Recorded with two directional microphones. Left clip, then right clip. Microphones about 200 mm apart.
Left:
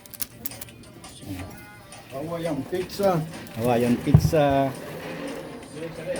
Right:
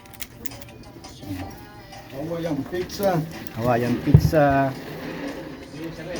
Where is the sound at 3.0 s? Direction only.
Centre (ahead or behind).